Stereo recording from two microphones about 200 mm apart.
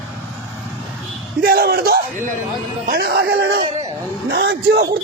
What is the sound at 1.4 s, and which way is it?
A man's voice, 50° right (ahead or behind).